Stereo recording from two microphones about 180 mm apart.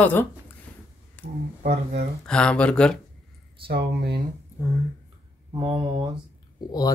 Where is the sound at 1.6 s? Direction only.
55° right (ahead or behind).